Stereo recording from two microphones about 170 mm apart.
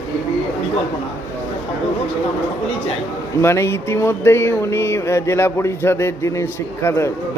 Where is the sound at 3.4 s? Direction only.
15° left (ahead or behind).